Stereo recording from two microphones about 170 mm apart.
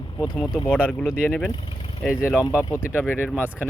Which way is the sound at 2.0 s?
15° left (ahead or behind).